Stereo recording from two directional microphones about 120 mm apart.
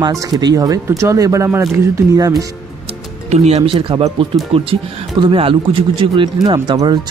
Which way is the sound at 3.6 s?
45° right (ahead or behind).